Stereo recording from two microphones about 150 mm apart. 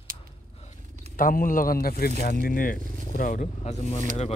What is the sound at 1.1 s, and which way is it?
Speech, 65° left (ahead or behind).